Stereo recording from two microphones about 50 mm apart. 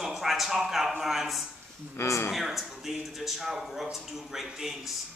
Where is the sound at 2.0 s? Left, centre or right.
Left.